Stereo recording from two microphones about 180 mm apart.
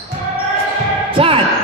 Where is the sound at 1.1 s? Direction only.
30° right (ahead or behind).